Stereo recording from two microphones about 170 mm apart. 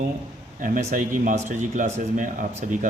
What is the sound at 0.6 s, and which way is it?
Speech, 50° right (ahead or behind).